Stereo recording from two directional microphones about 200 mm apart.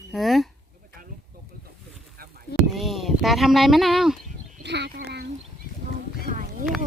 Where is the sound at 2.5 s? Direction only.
Centre (ahead or behind).